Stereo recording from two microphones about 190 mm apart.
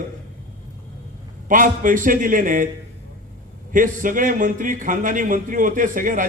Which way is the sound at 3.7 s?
45° right (ahead or behind).